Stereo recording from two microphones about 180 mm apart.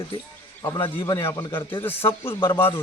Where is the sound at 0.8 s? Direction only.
30° left (ahead or behind).